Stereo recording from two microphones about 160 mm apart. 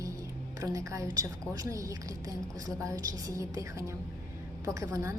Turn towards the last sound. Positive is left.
turn(degrees=-20)  # may be behind; listen again after turning